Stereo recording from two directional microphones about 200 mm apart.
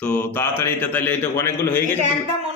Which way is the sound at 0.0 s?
5° left (ahead or behind).